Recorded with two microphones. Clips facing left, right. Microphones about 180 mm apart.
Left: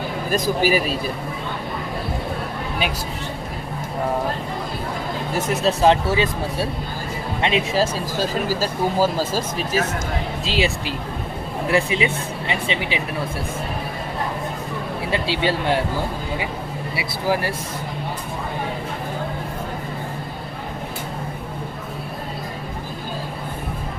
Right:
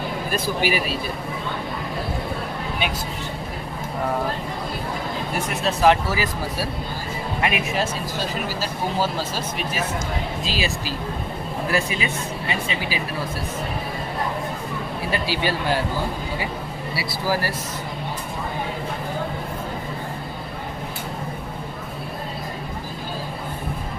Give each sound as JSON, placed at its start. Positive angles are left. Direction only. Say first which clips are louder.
{"t": 0.3, "sound": "speech", "louder": "left 5 dB", "side_deg": 40}
{"t": 5.6, "sound": "speech", "louder": "left 1 dB", "side_deg": 30}
{"t": 10.4, "sound": "speech", "louder": "left 4 dB", "side_deg": 25}
{"t": 15.1, "sound": "speech", "louder": "left 3 dB", "side_deg": 25}
{"t": 16.9, "sound": "speech", "louder": "left 2 dB", "side_deg": 20}